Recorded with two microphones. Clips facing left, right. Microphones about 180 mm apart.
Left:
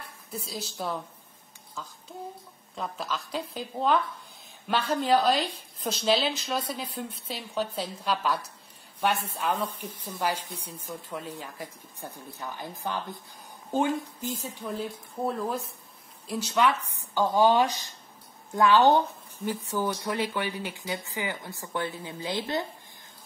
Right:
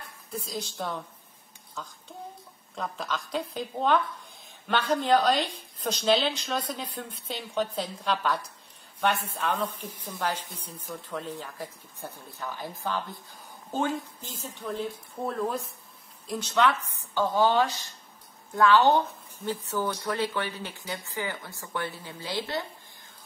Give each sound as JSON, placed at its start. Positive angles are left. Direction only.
{"t": 0.3, "sound": "a woman's voice", "side_deg": 5}
{"t": 14.4, "sound": "a woman's voice", "side_deg": 0}